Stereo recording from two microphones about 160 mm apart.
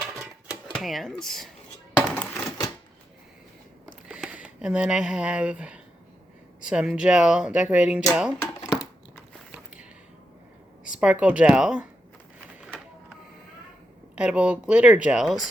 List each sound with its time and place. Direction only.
0.0 s typewriter: 5° right (ahead or behind)
0.7 s speech: centre (ahead or behind)
1.9 s a sound: 10° left (ahead or behind)
4.1 s speech: 5° right (ahead or behind)
8.4 s a sound: 20° left (ahead or behind)
10.9 s speech: 5° right (ahead or behind)
14.2 s speech: 5° right (ahead or behind)